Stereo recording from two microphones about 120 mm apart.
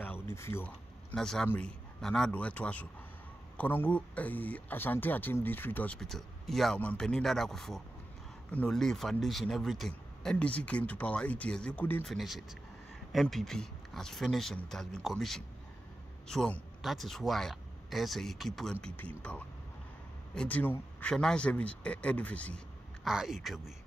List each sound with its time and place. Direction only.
0.0 s a sound: 20° left (ahead or behind)
1.1 s speech: 5° left (ahead or behind)
5.9 s speech: centre (ahead or behind)
12.0 s speech: centre (ahead or behind)
23.0 s speech: 5° right (ahead or behind)